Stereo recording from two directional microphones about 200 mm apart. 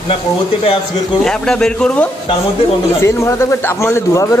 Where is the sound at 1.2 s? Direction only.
5° left (ahead or behind).